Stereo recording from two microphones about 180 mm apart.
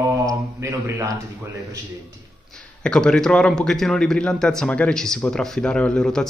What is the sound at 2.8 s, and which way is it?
A man's voice, 5° left (ahead or behind).